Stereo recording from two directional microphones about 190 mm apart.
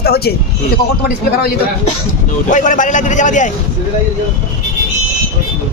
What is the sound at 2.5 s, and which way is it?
A man's voice, 40° left (ahead or behind).